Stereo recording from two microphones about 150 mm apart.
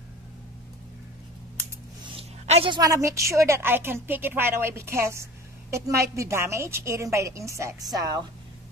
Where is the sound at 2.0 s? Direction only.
40° right (ahead or behind).